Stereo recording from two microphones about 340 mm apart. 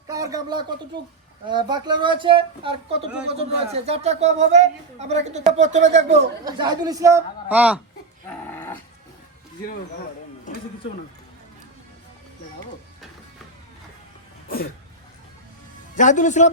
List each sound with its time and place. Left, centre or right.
0.1 s a man's voice: centre
8.3 s livestock: centre
14.4 s sneeze: left
16.0 s a man's voice: left